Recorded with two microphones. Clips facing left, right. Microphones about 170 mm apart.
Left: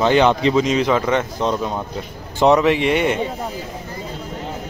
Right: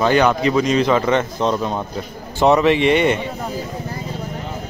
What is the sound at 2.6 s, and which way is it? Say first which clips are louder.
Speech: right 2 dB; 5° left (ahead or behind).